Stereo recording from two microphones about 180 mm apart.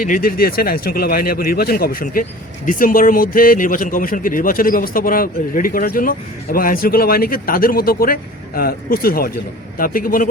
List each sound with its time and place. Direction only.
0.0 s a man's voice: 50° left (ahead or behind)